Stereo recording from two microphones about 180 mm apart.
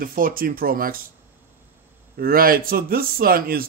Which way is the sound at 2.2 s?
55° right (ahead or behind).